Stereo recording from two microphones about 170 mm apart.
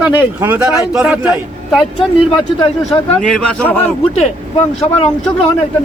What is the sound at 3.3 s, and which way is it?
Speech, 5° left (ahead or behind).